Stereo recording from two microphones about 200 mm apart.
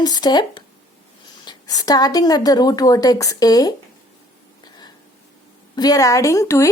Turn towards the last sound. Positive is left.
turn(degrees=15)  # may be behind; listen again after turning